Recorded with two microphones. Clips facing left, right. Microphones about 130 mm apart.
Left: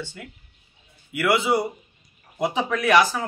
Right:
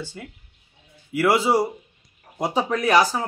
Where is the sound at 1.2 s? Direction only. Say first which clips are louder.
Right 2 dB; 35° right (ahead or behind).